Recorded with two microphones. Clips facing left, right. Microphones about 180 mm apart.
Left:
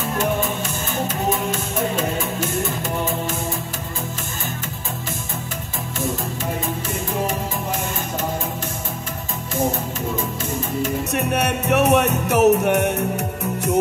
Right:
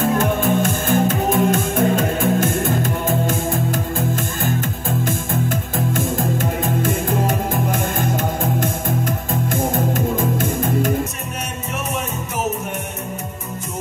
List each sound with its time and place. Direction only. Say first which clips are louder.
0.0 s music: right 4 dB; 50° right (ahead or behind)
11.7 s music: left 10 dB; 70° left (ahead or behind)